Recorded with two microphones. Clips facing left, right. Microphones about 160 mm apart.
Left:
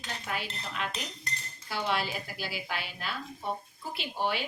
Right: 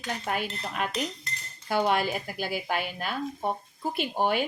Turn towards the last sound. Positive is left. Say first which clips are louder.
# right 6 dB
turn(degrees=-50)  # may be behind; listen again after turning